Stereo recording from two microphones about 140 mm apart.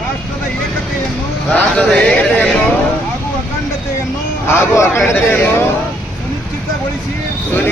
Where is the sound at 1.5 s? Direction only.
10° left (ahead or behind).